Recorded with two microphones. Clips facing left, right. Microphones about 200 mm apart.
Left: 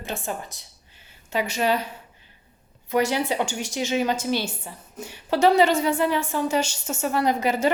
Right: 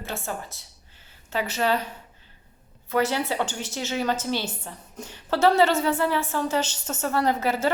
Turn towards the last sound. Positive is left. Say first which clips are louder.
# left 2 dB
turn(degrees=15)  # may be behind; listen again after turning